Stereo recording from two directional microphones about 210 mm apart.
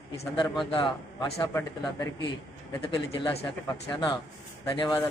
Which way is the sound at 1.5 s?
10° left (ahead or behind).